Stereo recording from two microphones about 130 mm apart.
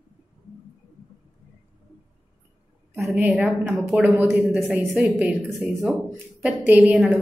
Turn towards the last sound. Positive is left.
turn(degrees=-5)  # may be behind; listen again after turning